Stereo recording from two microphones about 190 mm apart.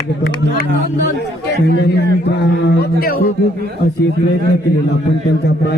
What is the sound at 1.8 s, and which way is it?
A man's voice, 60° left (ahead or behind).